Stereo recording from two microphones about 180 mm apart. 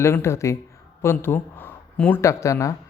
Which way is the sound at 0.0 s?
15° left (ahead or behind).